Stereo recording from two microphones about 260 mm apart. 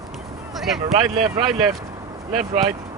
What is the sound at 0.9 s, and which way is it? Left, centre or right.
Speech, centre.